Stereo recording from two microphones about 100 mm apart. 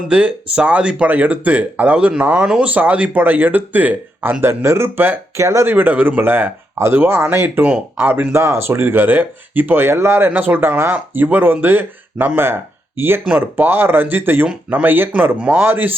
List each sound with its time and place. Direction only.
0.1 s speech: 10° right (ahead or behind)
13.2 s speech: 10° right (ahead or behind)
13.7 s speech: 20° right (ahead or behind)